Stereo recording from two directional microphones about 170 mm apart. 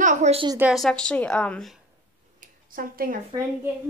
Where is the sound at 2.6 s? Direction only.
55° right (ahead or behind).